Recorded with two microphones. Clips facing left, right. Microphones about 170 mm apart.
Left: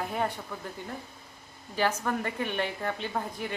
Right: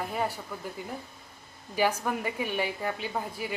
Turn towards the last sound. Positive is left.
turn(degrees=-5)  # may be behind; listen again after turning